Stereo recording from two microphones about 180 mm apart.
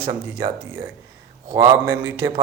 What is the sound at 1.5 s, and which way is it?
Speech, 20° right (ahead or behind).